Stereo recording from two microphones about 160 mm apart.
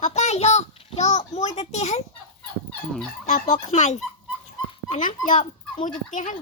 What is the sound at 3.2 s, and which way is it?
Speech, 50° left (ahead or behind).